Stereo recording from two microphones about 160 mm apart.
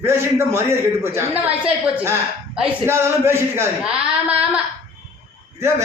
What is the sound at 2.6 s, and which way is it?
A woman's voice, 10° right (ahead or behind).